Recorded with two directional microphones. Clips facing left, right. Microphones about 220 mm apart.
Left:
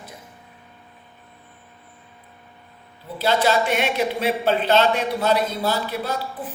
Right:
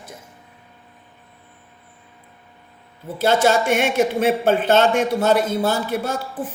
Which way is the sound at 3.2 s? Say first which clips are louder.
Right 3 dB; 50° right (ahead or behind).